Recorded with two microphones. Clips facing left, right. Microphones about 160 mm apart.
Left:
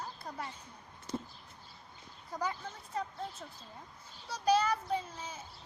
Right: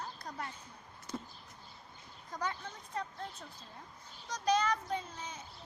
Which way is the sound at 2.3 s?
10° left (ahead or behind).